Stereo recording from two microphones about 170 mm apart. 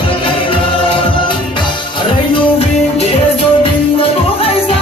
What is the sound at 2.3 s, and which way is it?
Music, 30° left (ahead or behind).